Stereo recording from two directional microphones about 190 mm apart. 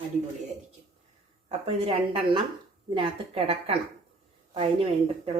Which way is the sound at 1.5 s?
30° right (ahead or behind).